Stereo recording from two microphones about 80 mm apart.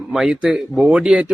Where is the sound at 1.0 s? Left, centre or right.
Centre.